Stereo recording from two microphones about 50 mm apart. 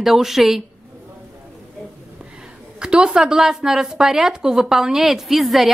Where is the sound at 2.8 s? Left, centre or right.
Centre.